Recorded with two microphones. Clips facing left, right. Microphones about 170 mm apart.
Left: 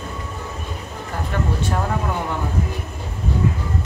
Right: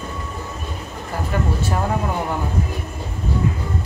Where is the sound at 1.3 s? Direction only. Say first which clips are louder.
Right 2 dB; 10° right (ahead or behind).